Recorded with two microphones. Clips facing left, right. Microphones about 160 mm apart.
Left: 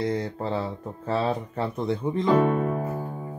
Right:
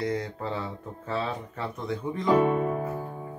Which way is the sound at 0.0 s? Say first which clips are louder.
Left 3 dB; 30° left (ahead or behind).